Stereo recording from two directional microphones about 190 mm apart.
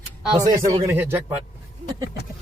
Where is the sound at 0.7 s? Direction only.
15° right (ahead or behind).